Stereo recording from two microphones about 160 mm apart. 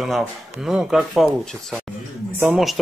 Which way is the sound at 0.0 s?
Centre (ahead or behind).